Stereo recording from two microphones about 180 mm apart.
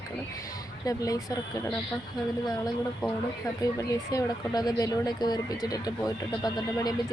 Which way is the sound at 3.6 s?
20° left (ahead or behind).